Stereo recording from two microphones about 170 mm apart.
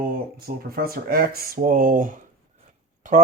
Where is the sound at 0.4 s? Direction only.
60° right (ahead or behind).